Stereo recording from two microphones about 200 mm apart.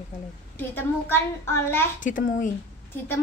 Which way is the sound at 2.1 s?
40° left (ahead or behind).